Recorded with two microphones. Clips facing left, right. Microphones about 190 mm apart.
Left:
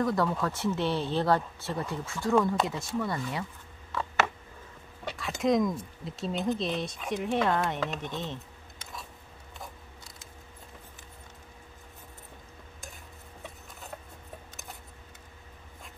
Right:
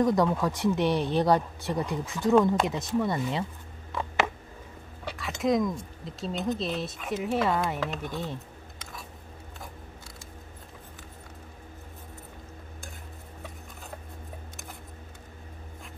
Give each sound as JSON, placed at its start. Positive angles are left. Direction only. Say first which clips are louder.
{"t": 0.0, "sound": "speech", "louder": "right 4 dB", "side_deg": -15}
{"t": 3.9, "sound": "a sound", "louder": "right 1 dB", "side_deg": -15}
{"t": 5.4, "sound": "speech", "louder": "even", "side_deg": 0}